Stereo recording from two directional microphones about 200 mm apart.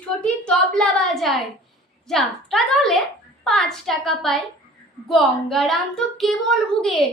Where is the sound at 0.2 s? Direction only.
5° left (ahead or behind).